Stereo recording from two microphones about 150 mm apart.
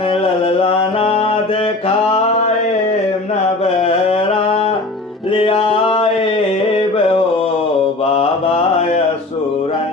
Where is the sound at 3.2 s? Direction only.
40° left (ahead or behind).